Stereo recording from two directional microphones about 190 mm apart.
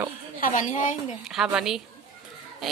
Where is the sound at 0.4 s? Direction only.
40° left (ahead or behind).